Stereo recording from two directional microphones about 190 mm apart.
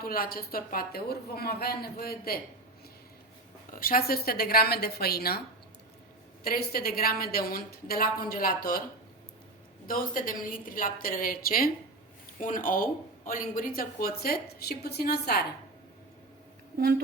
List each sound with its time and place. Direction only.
0.0 s speech: 50° left (ahead or behind)
3.7 s speech: 50° left (ahead or behind)
6.4 s speech: 50° left (ahead or behind)
9.8 s speech: 45° left (ahead or behind)